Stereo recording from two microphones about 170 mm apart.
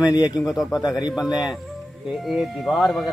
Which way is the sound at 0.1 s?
25° left (ahead or behind).